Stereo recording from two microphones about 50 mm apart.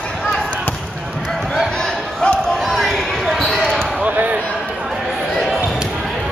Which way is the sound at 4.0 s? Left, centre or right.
Right.